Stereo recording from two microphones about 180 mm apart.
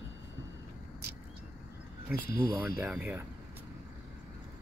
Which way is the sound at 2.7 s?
10° right (ahead or behind).